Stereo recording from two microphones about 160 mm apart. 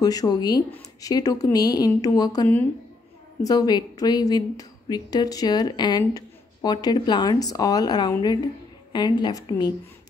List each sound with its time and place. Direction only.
0.0 s speech: 25° left (ahead or behind)